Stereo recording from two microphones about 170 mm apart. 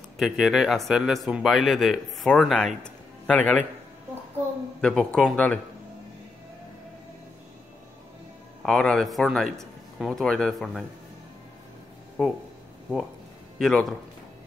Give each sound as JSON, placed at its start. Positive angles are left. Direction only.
{"t": 0.2, "sound": "speech", "side_deg": 0}
{"t": 4.8, "sound": "speech", "side_deg": 5}
{"t": 8.6, "sound": "speech", "side_deg": 5}
{"t": 12.2, "sound": "speech", "side_deg": -5}
{"t": 13.6, "sound": "speech", "side_deg": 0}